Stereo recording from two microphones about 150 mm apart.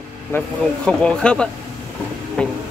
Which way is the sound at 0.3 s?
15° left (ahead or behind).